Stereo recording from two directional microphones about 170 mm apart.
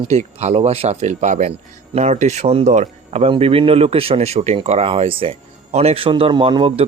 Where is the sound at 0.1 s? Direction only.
40° right (ahead or behind).